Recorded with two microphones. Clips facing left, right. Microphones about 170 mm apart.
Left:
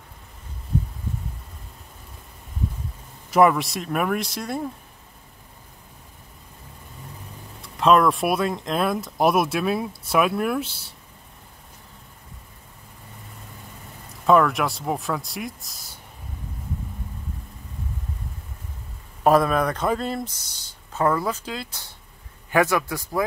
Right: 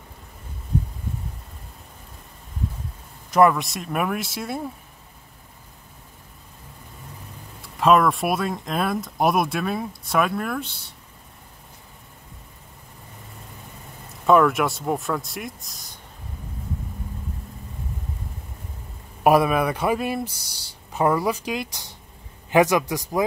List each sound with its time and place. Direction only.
3.3 s speech: 5° left (ahead or behind)
7.6 s speech: centre (ahead or behind)
14.2 s speech: centre (ahead or behind)
19.2 s speech: 10° right (ahead or behind)